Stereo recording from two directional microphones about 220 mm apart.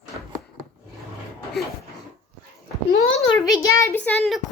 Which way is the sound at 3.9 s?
5° left (ahead or behind).